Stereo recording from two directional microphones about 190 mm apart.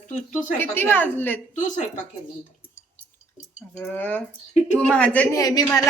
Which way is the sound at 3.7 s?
5° left (ahead or behind).